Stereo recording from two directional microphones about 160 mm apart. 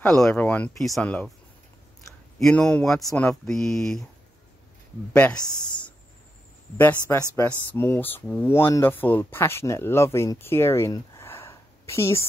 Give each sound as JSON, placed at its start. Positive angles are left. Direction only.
{"t": 0.0, "sound": "speech", "side_deg": 5}
{"t": 2.3, "sound": "speech", "side_deg": 5}
{"t": 5.1, "sound": "speech", "side_deg": 10}
{"t": 6.8, "sound": "speech", "side_deg": 15}